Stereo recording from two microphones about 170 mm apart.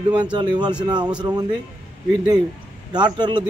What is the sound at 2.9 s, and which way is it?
Speech, 25° right (ahead or behind).